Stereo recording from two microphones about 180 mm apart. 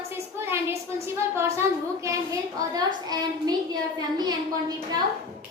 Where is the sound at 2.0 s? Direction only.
20° right (ahead or behind).